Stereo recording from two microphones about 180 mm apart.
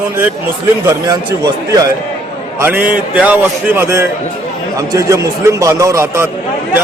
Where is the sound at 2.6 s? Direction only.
10° right (ahead or behind).